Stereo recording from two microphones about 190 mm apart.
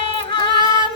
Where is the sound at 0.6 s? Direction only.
25° right (ahead or behind).